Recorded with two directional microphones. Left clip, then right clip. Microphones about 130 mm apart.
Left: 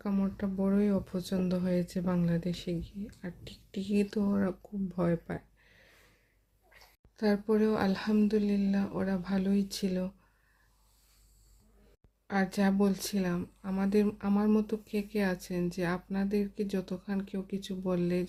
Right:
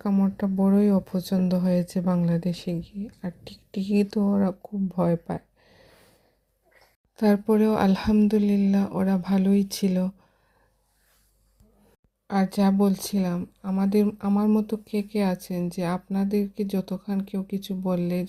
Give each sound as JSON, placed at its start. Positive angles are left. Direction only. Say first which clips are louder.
{"t": 0.0, "sound": "speech", "louder": "right 8 dB", "side_deg": -50}
{"t": 7.2, "sound": "speech", "louder": "right 7 dB", "side_deg": -65}
{"t": 12.3, "sound": "speech", "louder": "right 6 dB", "side_deg": -40}